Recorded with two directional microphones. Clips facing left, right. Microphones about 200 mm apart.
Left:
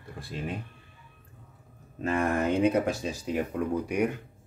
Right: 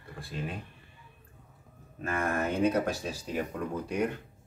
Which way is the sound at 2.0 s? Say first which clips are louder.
Left 4 dB; 15° left (ahead or behind).